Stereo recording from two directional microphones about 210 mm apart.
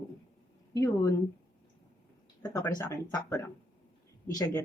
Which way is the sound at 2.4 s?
20° left (ahead or behind).